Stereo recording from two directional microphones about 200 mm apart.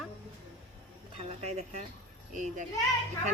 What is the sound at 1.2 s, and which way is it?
Speech, 30° right (ahead or behind).